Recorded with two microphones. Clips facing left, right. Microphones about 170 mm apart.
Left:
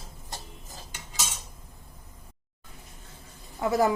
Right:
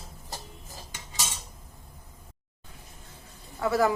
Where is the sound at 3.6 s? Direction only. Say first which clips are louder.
Left 1 dB; 20° left (ahead or behind).